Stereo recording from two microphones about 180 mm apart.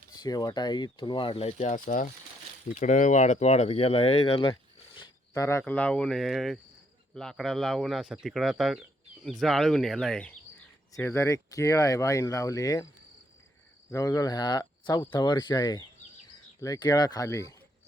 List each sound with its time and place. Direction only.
0.2 s speech: 20° left (ahead or behind)
4.9 s speech: 20° left (ahead or behind)
10.9 s speech: 15° left (ahead or behind)
13.9 s speech: 15° left (ahead or behind)